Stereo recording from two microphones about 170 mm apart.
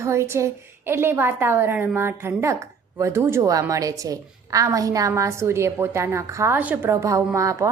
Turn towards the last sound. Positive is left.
turn(degrees=-20)  # may be behind; listen again after turning